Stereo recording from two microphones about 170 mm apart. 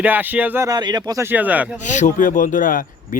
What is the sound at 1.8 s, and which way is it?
Speech, 45° left (ahead or behind).